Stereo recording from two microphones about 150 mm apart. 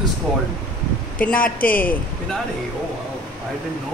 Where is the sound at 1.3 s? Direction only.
70° left (ahead or behind).